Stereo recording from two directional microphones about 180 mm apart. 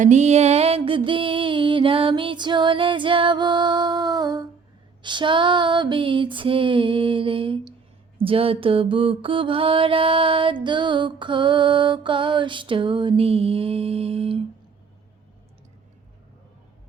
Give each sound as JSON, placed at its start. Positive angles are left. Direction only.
{"t": 0.0, "sound": "mantra", "side_deg": -40}